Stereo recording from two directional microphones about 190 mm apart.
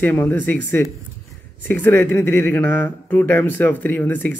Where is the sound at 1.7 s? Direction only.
10° left (ahead or behind).